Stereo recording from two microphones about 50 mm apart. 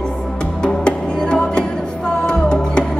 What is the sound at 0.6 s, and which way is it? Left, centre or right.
Music, centre.